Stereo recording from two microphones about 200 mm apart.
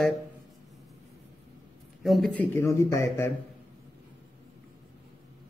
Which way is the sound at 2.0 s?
Centre (ahead or behind).